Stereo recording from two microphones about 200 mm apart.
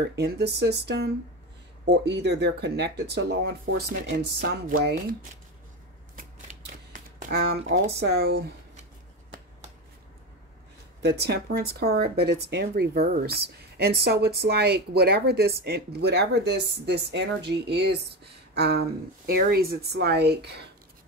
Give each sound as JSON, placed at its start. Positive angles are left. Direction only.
{"t": 0.1, "sound": "speech", "side_deg": -55}
{"t": 6.1, "sound": "shuffling cards", "side_deg": -40}
{"t": 7.9, "sound": "speech", "side_deg": -55}
{"t": 11.0, "sound": "speech", "side_deg": -55}